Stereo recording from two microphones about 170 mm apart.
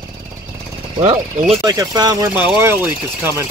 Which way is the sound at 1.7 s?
20° right (ahead or behind).